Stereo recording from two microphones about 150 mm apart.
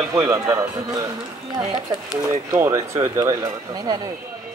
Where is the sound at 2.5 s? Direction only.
20° right (ahead or behind).